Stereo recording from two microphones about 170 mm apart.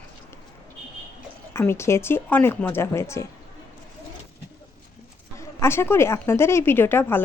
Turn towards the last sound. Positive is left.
turn(degrees=15)  # may be behind; listen again after turning